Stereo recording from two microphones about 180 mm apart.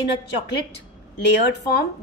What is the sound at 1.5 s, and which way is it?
Speech, 65° left (ahead or behind).